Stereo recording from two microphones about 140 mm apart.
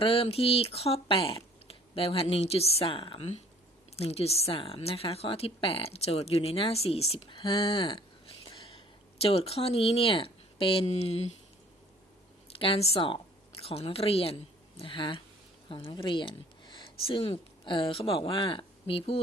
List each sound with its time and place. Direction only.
0.0 s a woman's voice: 40° left (ahead or behind)
12.5 s a woman's voice: 45° left (ahead or behind)